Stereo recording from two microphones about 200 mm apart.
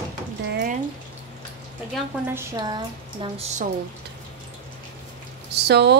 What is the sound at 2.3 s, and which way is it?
Music, 20° right (ahead or behind).